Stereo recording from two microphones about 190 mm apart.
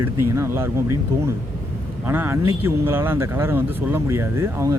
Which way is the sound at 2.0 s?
10° right (ahead or behind).